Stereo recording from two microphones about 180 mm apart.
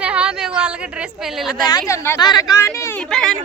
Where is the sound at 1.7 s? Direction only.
20° left (ahead or behind).